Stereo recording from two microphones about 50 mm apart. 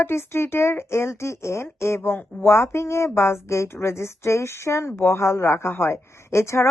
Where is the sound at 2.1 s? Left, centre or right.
Left.